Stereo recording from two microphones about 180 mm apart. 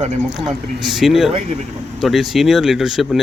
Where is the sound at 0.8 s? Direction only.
Centre (ahead or behind).